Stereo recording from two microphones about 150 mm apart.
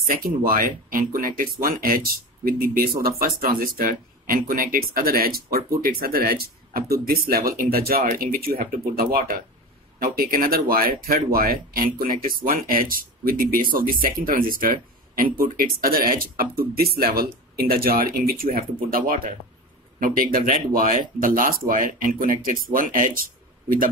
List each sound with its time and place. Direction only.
0.0 s speech: 75° right (ahead or behind)